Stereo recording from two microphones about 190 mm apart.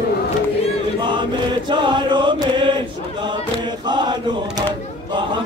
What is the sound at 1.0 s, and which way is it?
Chant, 25° right (ahead or behind).